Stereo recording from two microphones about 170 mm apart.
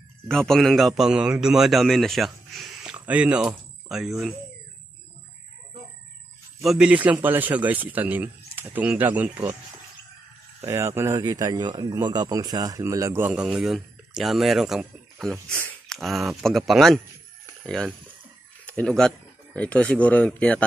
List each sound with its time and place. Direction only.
0.3 s a man's voice: 5° left (ahead or behind)
6.6 s speech: 5° right (ahead or behind)
10.6 s a man's voice: 15° right (ahead or behind); by 20.6 s 5° left (ahead or behind)